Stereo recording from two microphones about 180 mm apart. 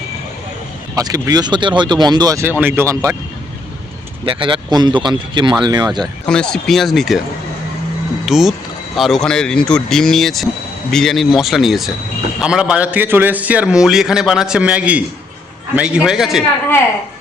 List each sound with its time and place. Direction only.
0.9 s speech: 20° right (ahead or behind)
4.3 s speech: 30° right (ahead or behind)
6.2 s a man's voice: 5° left (ahead or behind)
8.3 s a man's voice: centre (ahead or behind)